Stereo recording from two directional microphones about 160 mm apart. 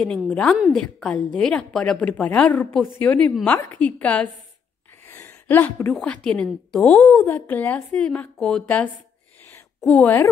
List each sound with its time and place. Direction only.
0.3 s a woman's voice: 5° left (ahead or behind)
3.5 s a woman's voice: 20° left (ahead or behind)
3.8 s a woman's voice: 10° left (ahead or behind)
5.0 s gasp: 15° left (ahead or behind)
5.9 s a woman's voice: 5° left (ahead or behind)